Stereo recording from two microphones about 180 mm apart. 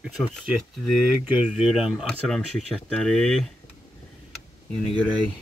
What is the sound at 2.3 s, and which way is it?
Speech, 5° left (ahead or behind).